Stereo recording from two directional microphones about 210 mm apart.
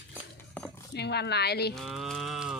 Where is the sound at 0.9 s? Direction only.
50° left (ahead or behind).